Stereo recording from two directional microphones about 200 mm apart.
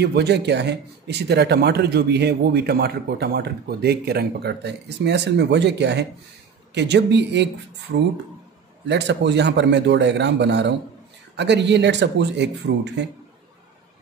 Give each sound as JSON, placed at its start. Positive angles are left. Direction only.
{"t": 0.0, "sound": "speech", "side_deg": -55}
{"t": 8.8, "sound": "speech", "side_deg": -60}